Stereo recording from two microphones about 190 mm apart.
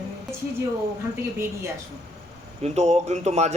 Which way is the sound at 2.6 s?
35° right (ahead or behind).